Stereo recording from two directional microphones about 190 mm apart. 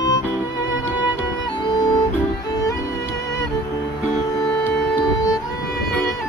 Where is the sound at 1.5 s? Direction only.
25° left (ahead or behind).